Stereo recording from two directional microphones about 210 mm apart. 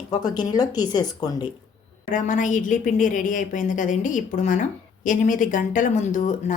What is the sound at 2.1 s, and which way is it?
A woman's voice, 40° left (ahead or behind).